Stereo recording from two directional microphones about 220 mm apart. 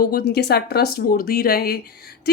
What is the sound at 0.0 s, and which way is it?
A woman's voice, 45° left (ahead or behind).